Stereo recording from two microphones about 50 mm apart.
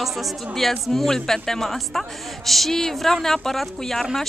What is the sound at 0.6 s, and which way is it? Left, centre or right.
Speech, centre.